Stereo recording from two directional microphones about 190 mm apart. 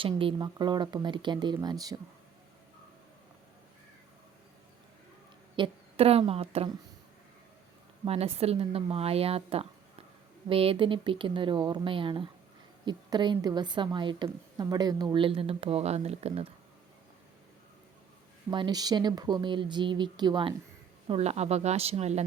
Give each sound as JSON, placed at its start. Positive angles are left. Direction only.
{"t": 0.0, "sound": "a woman's voice", "side_deg": -30}
{"t": 5.5, "sound": "a woman's voice", "side_deg": -30}
{"t": 8.0, "sound": "a woman's voice", "side_deg": -30}
{"t": 18.5, "sound": "a woman's voice", "side_deg": -20}
{"t": 21.1, "sound": "speech", "side_deg": -35}